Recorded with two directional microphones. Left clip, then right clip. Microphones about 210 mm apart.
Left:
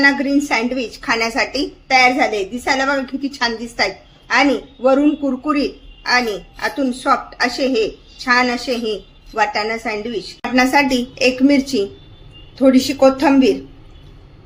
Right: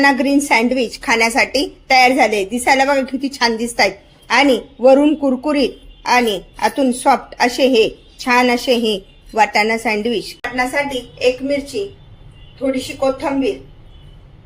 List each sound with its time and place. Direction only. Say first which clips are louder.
0.0 s a woman's voice: right 1 dB; 35° right (ahead or behind)
10.7 s a woman's voice: left 5 dB; 50° left (ahead or behind)
12.7 s a woman's voice: left 2 dB; 50° left (ahead or behind)